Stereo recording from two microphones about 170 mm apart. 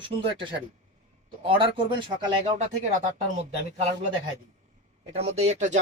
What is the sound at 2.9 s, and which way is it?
Speech, 45° right (ahead or behind).